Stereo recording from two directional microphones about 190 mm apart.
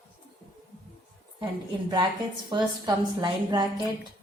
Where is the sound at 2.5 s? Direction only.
25° right (ahead or behind).